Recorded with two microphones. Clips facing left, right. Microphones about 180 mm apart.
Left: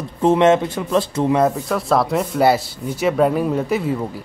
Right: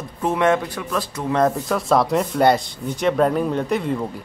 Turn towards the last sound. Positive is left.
turn(degrees=5)  # may be behind; listen again after turning